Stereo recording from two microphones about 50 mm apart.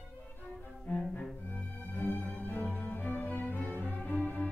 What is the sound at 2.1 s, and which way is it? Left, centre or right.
Music, left.